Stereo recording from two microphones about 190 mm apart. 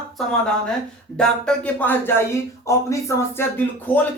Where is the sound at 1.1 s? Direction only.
5° left (ahead or behind).